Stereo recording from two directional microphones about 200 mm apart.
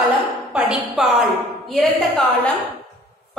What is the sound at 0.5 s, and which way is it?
A woman's voice, centre (ahead or behind).